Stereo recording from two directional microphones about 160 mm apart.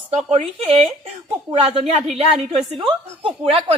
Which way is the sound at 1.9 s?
40° right (ahead or behind).